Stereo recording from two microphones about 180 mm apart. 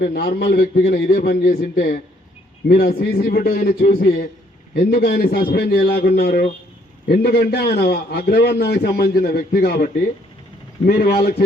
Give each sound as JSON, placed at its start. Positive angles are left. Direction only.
{"t": 0.0, "sound": "a man's voice", "side_deg": 55}